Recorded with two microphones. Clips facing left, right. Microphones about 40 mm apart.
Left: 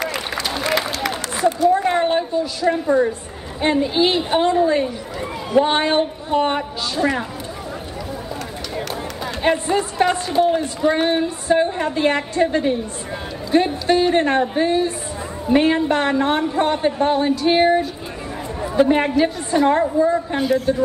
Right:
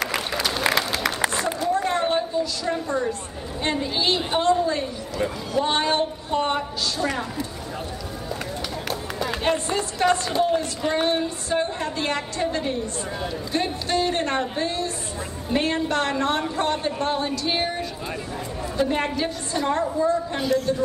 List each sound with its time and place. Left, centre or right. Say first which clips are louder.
0.3 s applause: left 1 dB; centre
1.3 s a sound: left 8 dB; centre
1.7 s a sound: left 5 dB; centre
3.6 s a woman's voice: left 7 dB; centre
9.2 s a woman's voice: left 4 dB; centre
20.3 s speech: left 4 dB; centre